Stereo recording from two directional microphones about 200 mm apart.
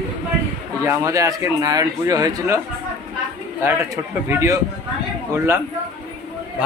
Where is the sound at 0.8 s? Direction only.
15° right (ahead or behind).